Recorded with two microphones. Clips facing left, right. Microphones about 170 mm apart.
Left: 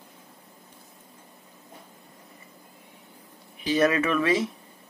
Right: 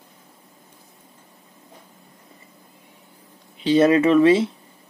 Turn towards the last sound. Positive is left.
turn(degrees=-30)  # may be behind; listen again after turning